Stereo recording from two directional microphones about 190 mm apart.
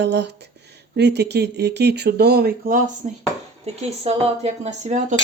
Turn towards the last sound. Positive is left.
turn(degrees=-40)  # may be behind; listen again after turning